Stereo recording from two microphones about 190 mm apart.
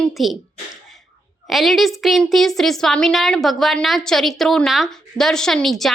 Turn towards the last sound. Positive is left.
turn(degrees=0)  # may be behind; listen again after turning